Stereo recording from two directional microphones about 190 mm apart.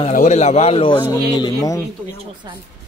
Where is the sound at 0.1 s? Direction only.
40° left (ahead or behind).